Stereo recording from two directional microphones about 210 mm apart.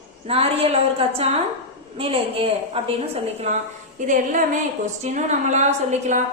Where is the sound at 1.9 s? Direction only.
25° right (ahead or behind).